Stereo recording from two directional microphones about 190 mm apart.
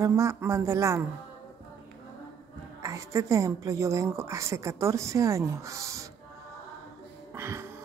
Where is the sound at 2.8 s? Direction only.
15° right (ahead or behind).